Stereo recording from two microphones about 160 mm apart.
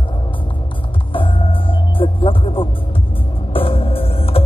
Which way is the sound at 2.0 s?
35° left (ahead or behind).